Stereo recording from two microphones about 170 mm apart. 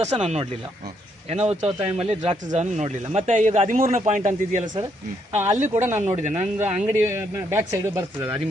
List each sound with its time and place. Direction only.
0.0 s speech: 40° right (ahead or behind)
5.3 s speech: 15° right (ahead or behind)
5.5 s speech: 45° right (ahead or behind)
6.8 s speech: 15° right (ahead or behind)